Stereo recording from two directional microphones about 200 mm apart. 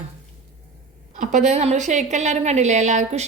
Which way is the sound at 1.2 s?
40° right (ahead or behind).